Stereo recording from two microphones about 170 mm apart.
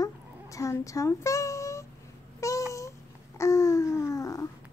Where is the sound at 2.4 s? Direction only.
20° left (ahead or behind).